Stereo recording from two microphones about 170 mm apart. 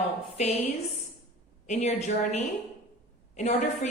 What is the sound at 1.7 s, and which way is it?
A woman's voice, 40° left (ahead or behind).